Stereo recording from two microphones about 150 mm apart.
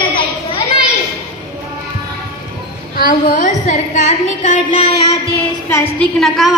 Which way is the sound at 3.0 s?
65° left (ahead or behind).